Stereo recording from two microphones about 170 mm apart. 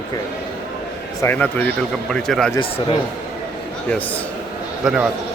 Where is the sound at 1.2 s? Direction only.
10° left (ahead or behind).